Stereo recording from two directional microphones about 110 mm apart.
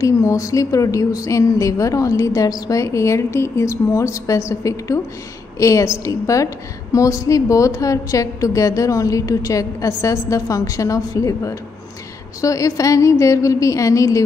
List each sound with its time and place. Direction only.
0.0 s a woman's voice: 30° left (ahead or behind)